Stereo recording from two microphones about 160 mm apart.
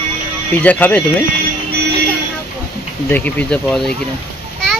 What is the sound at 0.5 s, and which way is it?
Speech, 10° left (ahead or behind).